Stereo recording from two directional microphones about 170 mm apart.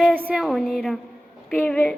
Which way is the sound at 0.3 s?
Centre (ahead or behind).